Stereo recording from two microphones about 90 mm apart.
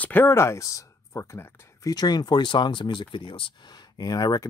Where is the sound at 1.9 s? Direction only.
50° left (ahead or behind).